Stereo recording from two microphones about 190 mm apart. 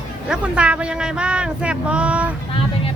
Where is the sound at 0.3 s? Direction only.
5° right (ahead or behind).